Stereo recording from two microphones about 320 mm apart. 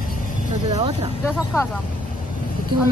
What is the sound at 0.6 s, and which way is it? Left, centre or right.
Speech, centre.